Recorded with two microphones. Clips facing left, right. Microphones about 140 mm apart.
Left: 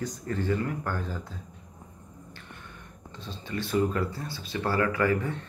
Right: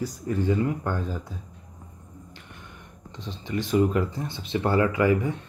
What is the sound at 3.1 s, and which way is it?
Speech, 15° right (ahead or behind).